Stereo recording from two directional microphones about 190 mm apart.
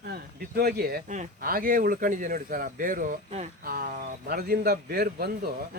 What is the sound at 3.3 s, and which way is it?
Speech, 35° right (ahead or behind).